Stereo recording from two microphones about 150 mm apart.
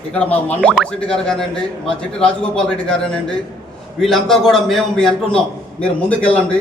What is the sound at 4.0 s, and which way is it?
A man's voice, centre (ahead or behind).